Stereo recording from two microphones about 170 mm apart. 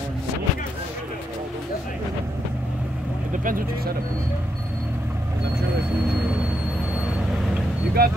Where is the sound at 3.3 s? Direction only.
55° right (ahead or behind).